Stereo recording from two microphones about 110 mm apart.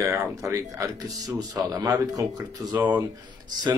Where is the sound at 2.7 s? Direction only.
15° right (ahead or behind).